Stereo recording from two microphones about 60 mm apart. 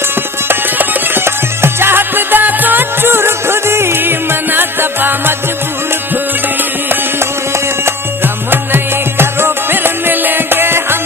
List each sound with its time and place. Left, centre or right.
0.4 s music: right
8.4 s music: right